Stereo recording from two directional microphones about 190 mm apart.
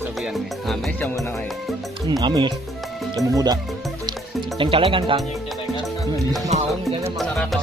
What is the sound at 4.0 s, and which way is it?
Music, 20° right (ahead or behind).